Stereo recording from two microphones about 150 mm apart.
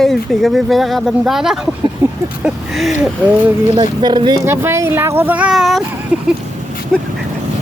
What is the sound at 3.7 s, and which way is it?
Speech, 30° right (ahead or behind).